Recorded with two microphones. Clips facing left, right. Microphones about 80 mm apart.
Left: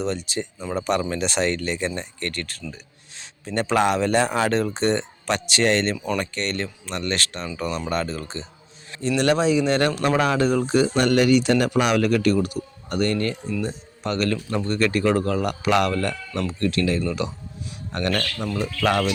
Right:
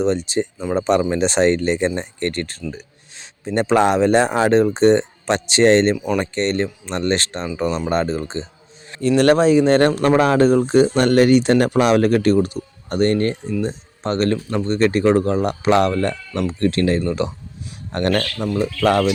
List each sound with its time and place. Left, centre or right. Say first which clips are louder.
0.0 s speech: right 7 dB; right
9.0 s speech: right 6 dB; right
18.3 s speech: right 6 dB; centre